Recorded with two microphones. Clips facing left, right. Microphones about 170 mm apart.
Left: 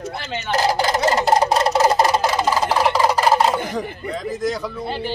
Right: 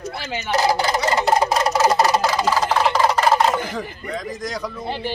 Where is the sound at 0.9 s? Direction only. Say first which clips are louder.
Left 2 dB; 35° left (ahead or behind); by 3.6 s 10° left (ahead or behind).